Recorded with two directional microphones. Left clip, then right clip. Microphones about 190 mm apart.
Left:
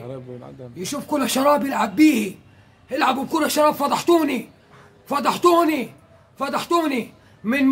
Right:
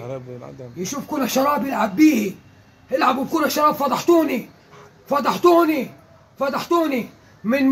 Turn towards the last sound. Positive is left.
turn(degrees=30)  # may be behind; listen again after turning